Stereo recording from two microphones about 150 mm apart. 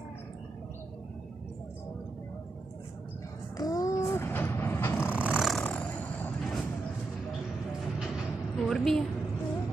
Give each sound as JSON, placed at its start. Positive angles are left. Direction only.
{"t": 3.5, "sound": "music", "side_deg": 25}
{"t": 5.0, "sound": "vehicle", "side_deg": -10}
{"t": 8.6, "sound": "a sound", "side_deg": 0}